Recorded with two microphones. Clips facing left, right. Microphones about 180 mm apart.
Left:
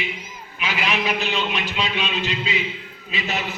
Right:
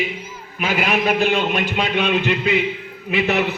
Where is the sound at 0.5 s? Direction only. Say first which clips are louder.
Right 5 dB; 50° right (ahead or behind).